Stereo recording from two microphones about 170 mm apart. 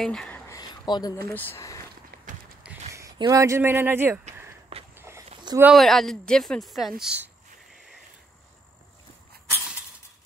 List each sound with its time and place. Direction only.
0.0 s speech: 5° left (ahead or behind)
0.5 s speech: 25° left (ahead or behind)
2.9 s speech: 20° right (ahead or behind)
4.9 s walk: 15° right (ahead or behind)
5.3 s a sound: 25° right (ahead or behind)
5.6 s speech: centre (ahead or behind)